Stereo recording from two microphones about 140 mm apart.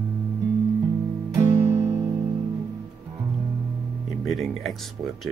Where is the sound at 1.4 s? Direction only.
15° right (ahead or behind).